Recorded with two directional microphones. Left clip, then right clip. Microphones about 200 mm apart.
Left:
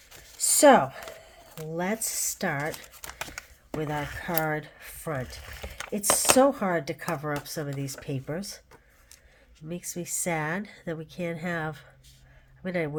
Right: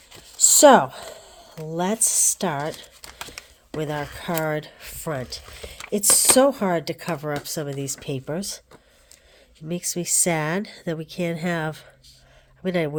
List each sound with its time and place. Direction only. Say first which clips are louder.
0.3 s a sound: right 5 dB; 30° right (ahead or behind)
1.7 s speech: right 7 dB; 35° right (ahead or behind)
3.8 s a woman's voice: right 3 dB; 45° right (ahead or behind)
9.6 s a woman's voice: right 8 dB; 45° right (ahead or behind)